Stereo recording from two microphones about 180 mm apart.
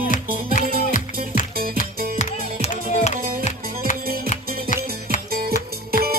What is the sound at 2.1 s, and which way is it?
Music, 45° left (ahead or behind).